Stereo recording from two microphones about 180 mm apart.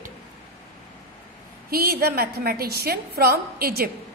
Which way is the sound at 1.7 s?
60° right (ahead or behind).